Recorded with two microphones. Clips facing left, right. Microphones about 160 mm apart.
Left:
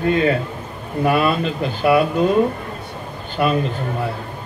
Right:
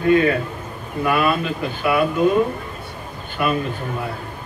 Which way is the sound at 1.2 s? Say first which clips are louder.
Left 1 dB; 55° right (ahead or behind).